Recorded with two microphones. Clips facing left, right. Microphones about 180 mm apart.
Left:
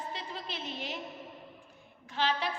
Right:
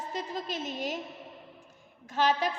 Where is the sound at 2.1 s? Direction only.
45° right (ahead or behind).